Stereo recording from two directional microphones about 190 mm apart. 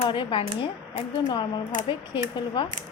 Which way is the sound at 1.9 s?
25° left (ahead or behind).